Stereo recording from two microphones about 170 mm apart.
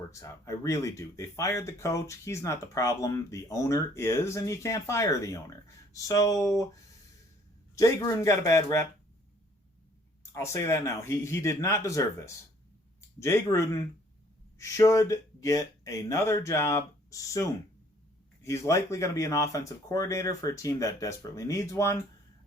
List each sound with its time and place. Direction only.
0.1 s speech: 15° left (ahead or behind)
7.8 s speech: 20° left (ahead or behind)
10.3 s speech: 15° left (ahead or behind)